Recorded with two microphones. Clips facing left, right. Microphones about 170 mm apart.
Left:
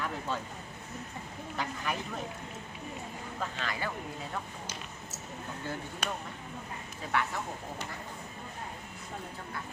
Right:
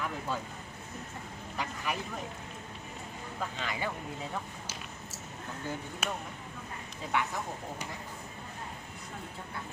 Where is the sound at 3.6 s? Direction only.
20° right (ahead or behind).